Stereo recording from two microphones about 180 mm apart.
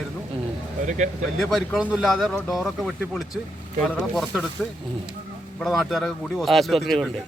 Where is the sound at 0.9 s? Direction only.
45° right (ahead or behind).